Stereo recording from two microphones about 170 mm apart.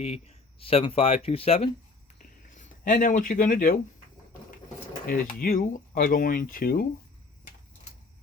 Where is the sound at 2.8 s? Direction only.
50° left (ahead or behind).